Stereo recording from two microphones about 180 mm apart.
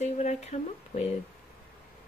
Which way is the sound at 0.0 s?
40° left (ahead or behind).